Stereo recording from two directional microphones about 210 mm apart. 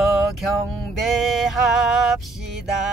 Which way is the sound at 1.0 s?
Centre (ahead or behind).